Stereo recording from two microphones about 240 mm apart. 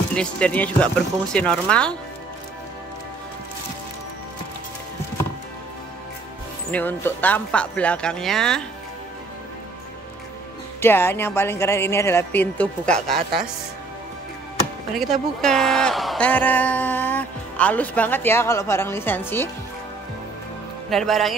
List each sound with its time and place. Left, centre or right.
0.1 s speech: centre
6.7 s speech: centre
10.8 s a woman's voice: centre
15.0 s a woman's voice: centre
20.9 s speech: centre